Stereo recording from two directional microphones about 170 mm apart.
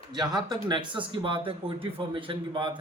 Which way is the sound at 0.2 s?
25° right (ahead or behind).